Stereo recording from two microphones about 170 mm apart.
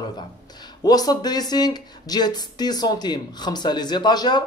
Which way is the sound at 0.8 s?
20° left (ahead or behind).